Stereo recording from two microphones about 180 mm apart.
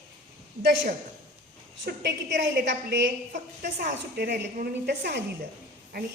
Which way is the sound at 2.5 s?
75° right (ahead or behind).